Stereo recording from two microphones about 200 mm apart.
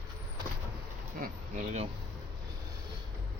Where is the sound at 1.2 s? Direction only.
40° right (ahead or behind).